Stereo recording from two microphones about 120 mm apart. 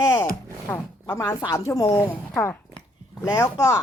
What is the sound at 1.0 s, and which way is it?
Speech, 35° left (ahead or behind).